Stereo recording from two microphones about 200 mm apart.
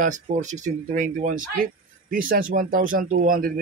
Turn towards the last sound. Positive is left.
turn(degrees=-40)  # may be behind; listen again after turning